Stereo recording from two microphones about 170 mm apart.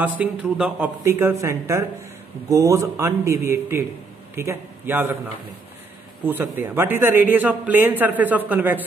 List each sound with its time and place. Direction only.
0.0 s a man's voice: 10° right (ahead or behind)
6.2 s a man's voice: 10° right (ahead or behind)